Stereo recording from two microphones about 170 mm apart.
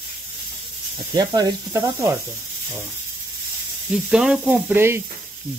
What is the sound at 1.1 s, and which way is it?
Sizzle, 25° right (ahead or behind).